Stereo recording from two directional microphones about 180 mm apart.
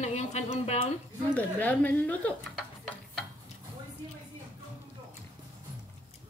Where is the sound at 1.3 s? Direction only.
10° left (ahead or behind).